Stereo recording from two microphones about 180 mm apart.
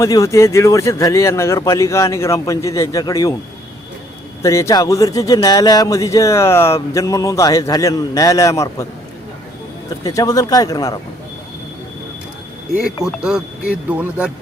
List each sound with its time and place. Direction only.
0.0 s speech: 20° left (ahead or behind)
4.4 s a man's voice: 15° left (ahead or behind)
10.0 s a man's voice: 20° left (ahead or behind)
12.8 s speech: 5° right (ahead or behind)